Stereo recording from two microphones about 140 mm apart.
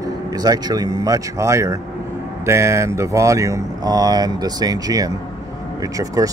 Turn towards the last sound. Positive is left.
turn(degrees=-25)  # may be behind; listen again after turning